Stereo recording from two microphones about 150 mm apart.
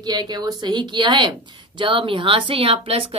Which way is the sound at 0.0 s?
25° right (ahead or behind).